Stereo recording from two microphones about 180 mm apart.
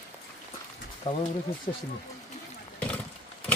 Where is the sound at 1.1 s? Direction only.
25° left (ahead or behind).